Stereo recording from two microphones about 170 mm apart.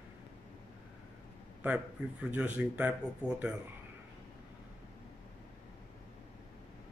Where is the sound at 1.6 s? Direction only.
5° right (ahead or behind).